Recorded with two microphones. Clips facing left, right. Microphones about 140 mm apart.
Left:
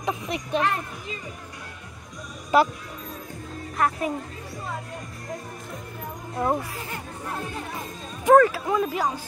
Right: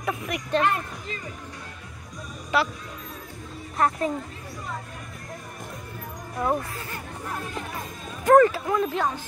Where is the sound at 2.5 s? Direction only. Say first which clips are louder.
Left 5 dB; 40° left (ahead or behind).